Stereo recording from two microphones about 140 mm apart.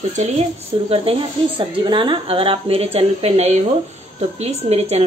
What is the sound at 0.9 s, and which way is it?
A woman's voice, 40° right (ahead or behind).